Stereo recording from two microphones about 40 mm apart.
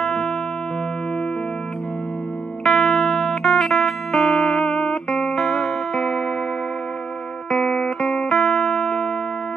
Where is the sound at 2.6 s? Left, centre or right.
Centre.